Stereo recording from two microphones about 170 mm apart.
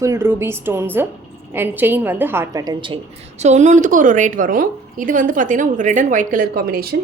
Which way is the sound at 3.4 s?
40° right (ahead or behind).